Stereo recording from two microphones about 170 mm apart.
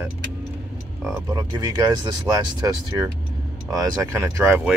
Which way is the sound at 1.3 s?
20° right (ahead or behind).